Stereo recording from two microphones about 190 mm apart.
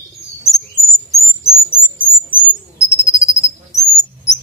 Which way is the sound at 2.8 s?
15° left (ahead or behind).